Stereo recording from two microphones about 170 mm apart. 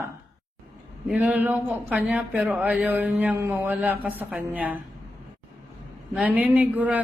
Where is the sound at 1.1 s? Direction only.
10° right (ahead or behind).